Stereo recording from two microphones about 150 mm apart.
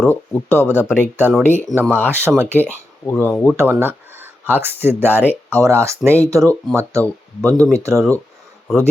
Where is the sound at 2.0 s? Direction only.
15° right (ahead or behind).